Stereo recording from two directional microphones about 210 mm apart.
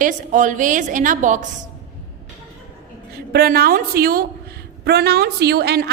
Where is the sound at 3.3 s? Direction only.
45° right (ahead or behind).